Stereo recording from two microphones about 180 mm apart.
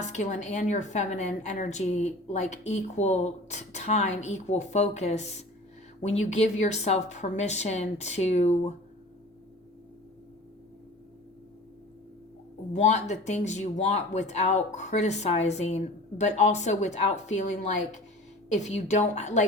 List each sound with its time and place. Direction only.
0.0 s a woman's voice: 40° left (ahead or behind)
12.7 s a woman's voice: 40° left (ahead or behind)